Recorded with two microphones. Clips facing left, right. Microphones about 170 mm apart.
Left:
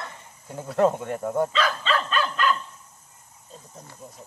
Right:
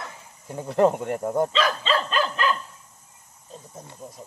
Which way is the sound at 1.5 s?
30° right (ahead or behind).